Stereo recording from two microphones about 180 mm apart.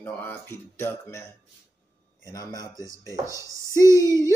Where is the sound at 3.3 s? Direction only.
15° right (ahead or behind).